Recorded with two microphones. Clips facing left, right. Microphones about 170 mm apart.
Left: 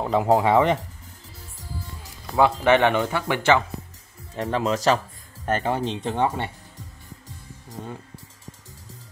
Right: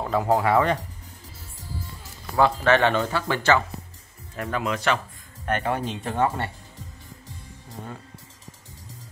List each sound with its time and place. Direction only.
0.0 s speech: 15° left (ahead or behind)
2.3 s speech: 15° left (ahead or behind)
4.4 s speech: 30° left (ahead or behind)